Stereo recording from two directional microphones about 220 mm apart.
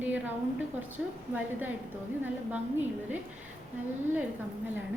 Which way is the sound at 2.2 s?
10° right (ahead or behind).